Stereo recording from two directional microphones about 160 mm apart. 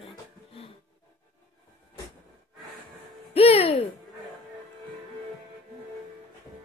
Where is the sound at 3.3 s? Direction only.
35° left (ahead or behind).